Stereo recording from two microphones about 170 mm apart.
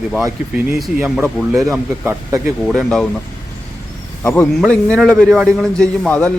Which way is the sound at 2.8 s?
5° left (ahead or behind).